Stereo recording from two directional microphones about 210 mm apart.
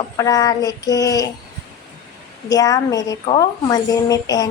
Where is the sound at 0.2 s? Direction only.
15° left (ahead or behind).